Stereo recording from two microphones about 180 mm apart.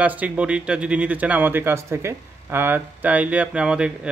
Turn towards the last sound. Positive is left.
turn(degrees=-5)  # may be behind; listen again after turning